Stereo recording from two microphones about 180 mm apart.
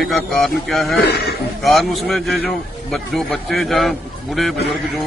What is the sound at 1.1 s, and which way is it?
Speech, 60° left (ahead or behind).